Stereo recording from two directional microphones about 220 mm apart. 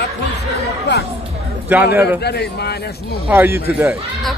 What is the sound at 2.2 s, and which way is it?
Speech, 45° left (ahead or behind).